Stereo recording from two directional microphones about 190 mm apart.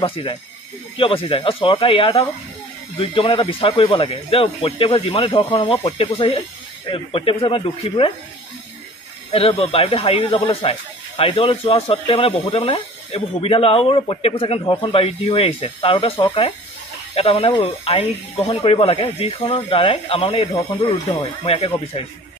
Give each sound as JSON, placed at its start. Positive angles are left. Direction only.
{"t": 0.0, "sound": "speech", "side_deg": 30}
{"t": 9.3, "sound": "speech", "side_deg": 30}